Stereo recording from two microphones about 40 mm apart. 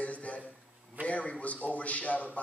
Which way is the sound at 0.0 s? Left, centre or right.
Left.